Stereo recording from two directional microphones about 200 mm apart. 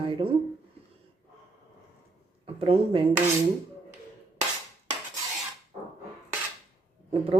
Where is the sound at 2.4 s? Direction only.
30° right (ahead or behind).